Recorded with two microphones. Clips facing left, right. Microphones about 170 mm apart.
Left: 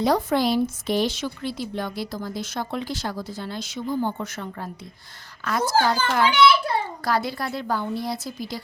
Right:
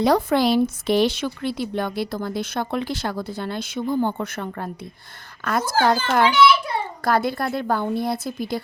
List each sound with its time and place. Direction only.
0.0 s speech: 65° right (ahead or behind)